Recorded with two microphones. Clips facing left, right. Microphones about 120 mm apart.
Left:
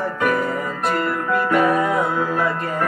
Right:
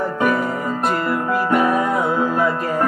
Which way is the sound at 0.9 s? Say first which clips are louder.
Right 1 dB; centre (ahead or behind).